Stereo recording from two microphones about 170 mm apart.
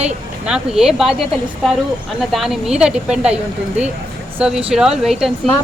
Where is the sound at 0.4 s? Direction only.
5° right (ahead or behind).